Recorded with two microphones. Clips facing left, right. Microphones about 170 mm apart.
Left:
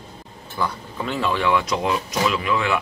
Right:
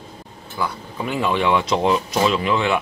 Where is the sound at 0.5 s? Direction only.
10° right (ahead or behind).